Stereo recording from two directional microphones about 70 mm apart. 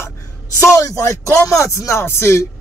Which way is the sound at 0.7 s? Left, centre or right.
Left.